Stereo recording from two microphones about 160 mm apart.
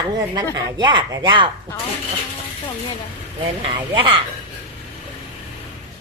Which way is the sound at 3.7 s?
30° right (ahead or behind).